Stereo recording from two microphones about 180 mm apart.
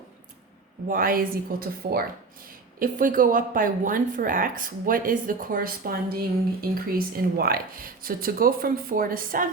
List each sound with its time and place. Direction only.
0.9 s a woman's voice: 50° right (ahead or behind)